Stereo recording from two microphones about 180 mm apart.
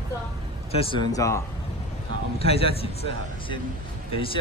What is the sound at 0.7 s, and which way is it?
Speech, 30° left (ahead or behind).